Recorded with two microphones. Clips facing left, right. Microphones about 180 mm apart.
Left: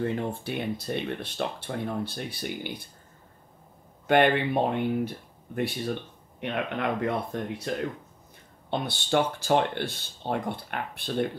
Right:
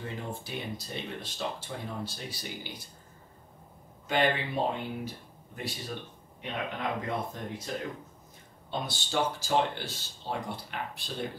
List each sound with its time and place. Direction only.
0.0 s speech: 60° left (ahead or behind)
4.1 s speech: 60° left (ahead or behind)